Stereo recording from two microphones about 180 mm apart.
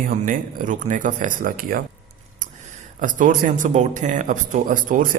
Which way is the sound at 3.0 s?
45° right (ahead or behind).